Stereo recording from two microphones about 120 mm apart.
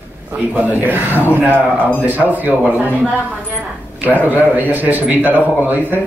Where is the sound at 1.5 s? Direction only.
10° left (ahead or behind).